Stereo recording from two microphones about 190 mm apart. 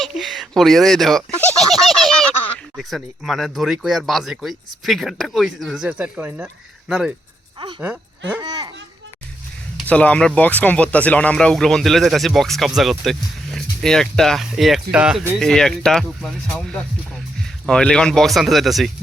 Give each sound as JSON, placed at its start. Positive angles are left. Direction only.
{"t": 0.0, "sound": "speech", "side_deg": 0}
{"t": 1.4, "sound": "a sound", "side_deg": 5}
{"t": 1.7, "sound": "speech", "side_deg": 0}
{"t": 8.4, "sound": "a child's voice", "side_deg": -20}
{"t": 9.7, "sound": "speech", "side_deg": 5}
{"t": 15.4, "sound": "speech", "side_deg": 0}